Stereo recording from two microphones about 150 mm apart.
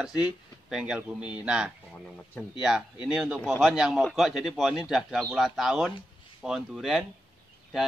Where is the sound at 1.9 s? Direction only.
5° left (ahead or behind).